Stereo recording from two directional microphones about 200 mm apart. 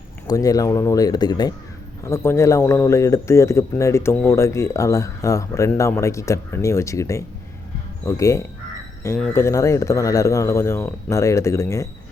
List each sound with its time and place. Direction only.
0.3 s speech: 20° left (ahead or behind)